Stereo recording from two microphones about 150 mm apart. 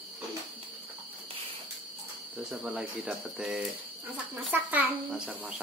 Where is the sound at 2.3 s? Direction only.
5° right (ahead or behind).